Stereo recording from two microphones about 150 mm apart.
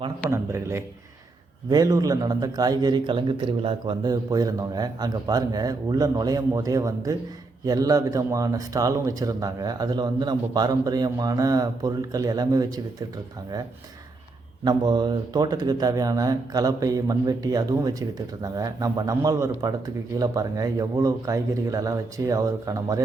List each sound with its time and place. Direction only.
0.3 s a man's voice: 20° right (ahead or behind)
14.6 s a man's voice: 30° right (ahead or behind)